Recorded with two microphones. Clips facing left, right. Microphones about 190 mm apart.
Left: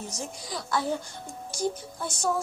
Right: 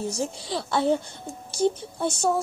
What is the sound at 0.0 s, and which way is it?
Speech, 30° right (ahead or behind).